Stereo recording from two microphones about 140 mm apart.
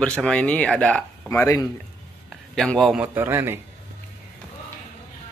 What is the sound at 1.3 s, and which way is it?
Speech, 15° left (ahead or behind).